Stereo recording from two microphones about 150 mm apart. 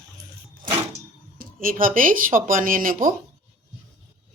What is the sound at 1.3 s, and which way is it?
Speech, 70° right (ahead or behind).